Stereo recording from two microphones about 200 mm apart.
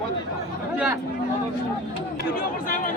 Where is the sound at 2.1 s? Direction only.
45° left (ahead or behind).